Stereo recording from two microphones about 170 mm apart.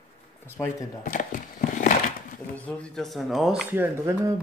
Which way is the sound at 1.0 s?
50° left (ahead or behind).